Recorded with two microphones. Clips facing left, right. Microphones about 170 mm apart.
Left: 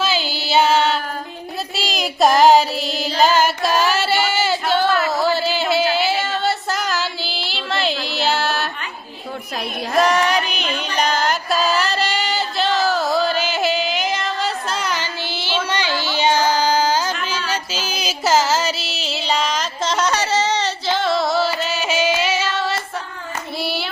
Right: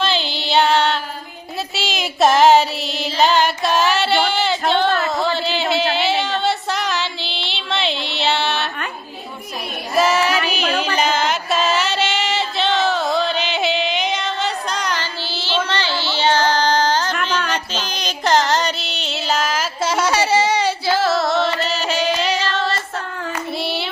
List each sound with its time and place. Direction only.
0.0 s music: 5° left (ahead or behind)
1.7 s female singing: centre (ahead or behind)
5.0 s a sound: 5° left (ahead or behind)
10.0 s music: 5° right (ahead or behind)